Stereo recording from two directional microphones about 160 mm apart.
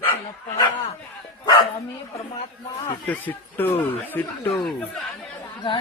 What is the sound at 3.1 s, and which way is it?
Speech, 10° left (ahead or behind).